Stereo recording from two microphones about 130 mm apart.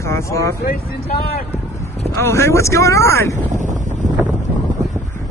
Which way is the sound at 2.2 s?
20° left (ahead or behind).